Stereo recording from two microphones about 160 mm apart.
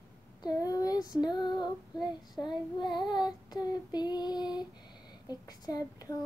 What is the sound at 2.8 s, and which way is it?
Child singing, 30° left (ahead or behind).